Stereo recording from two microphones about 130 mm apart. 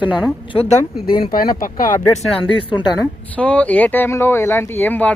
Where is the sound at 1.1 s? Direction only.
90° left.